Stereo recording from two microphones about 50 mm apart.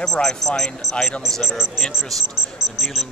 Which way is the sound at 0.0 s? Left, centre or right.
Centre.